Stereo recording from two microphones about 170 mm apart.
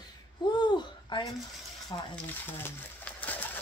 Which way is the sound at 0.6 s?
25° left (ahead or behind).